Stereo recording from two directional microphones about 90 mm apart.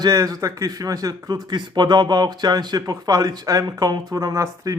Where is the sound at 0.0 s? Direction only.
40° right (ahead or behind).